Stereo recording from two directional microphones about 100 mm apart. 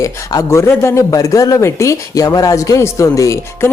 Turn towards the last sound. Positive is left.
turn(degrees=35)  # may be behind; listen again after turning